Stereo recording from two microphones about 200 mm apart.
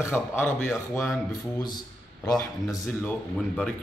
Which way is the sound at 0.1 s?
5° left (ahead or behind).